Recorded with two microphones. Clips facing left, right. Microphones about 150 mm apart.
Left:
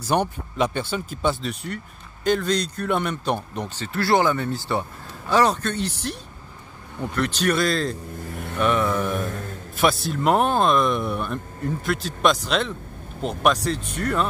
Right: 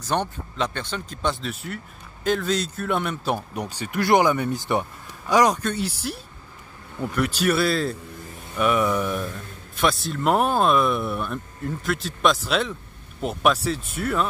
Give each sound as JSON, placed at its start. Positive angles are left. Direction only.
{"t": 0.0, "sound": "speech", "side_deg": 10}
{"t": 9.8, "sound": "speech", "side_deg": 0}